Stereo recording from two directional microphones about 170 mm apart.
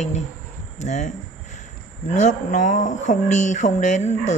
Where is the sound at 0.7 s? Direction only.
45° left (ahead or behind).